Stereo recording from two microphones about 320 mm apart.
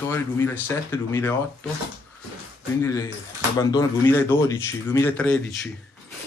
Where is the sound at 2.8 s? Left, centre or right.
Centre.